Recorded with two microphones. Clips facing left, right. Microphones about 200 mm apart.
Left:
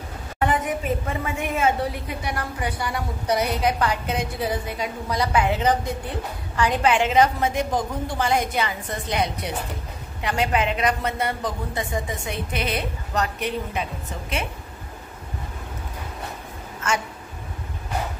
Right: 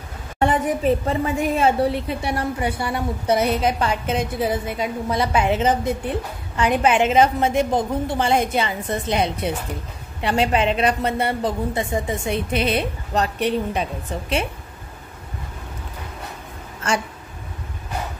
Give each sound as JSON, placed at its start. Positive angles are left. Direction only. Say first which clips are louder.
{"t": 0.4, "sound": "a woman's voice", "louder": "right 4 dB", "side_deg": -30}
{"t": 16.8, "sound": "speech", "louder": "right 3 dB", "side_deg": -35}